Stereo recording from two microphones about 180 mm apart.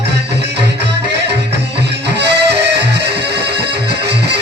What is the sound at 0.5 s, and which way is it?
Music, 70° right (ahead or behind).